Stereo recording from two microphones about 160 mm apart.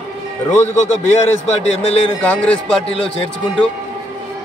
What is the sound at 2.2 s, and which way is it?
Speech, 10° left (ahead or behind).